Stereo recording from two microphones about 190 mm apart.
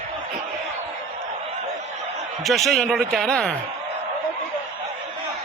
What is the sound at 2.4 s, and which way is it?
A man's voice, centre (ahead or behind).